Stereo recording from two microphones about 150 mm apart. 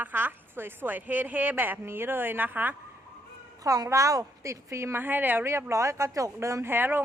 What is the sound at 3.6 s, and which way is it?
Speech, 25° right (ahead or behind).